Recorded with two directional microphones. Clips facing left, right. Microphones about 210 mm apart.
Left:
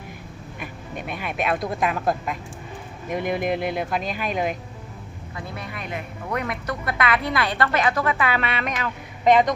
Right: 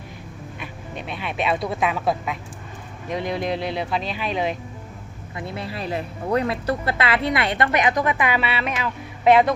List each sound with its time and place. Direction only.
1.2 s speech: 5° left (ahead or behind)
3.1 s speech: 50° left (ahead or behind)
5.4 s speech: 25° right (ahead or behind); by 9.5 s 5° right (ahead or behind)